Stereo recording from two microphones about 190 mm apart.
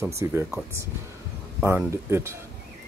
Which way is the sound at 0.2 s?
15° right (ahead or behind).